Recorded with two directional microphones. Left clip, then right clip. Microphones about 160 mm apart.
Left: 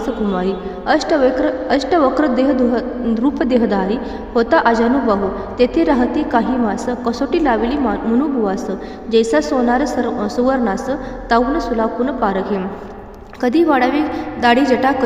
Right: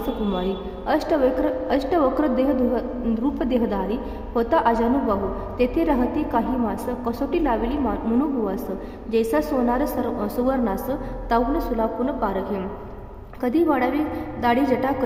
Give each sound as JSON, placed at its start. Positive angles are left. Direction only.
{"t": 0.3, "sound": "a woman's voice", "side_deg": 20}
{"t": 9.1, "sound": "a woman's voice", "side_deg": 20}